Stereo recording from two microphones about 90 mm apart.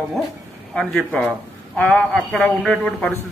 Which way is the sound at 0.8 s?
10° left (ahead or behind).